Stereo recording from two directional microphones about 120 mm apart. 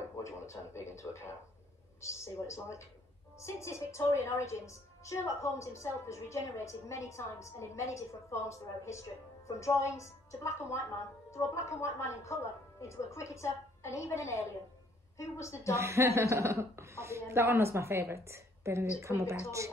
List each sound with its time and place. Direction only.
0.2 s a woman's voice: 25° left (ahead or behind)
15.7 s a woman's voice: 25° right (ahead or behind)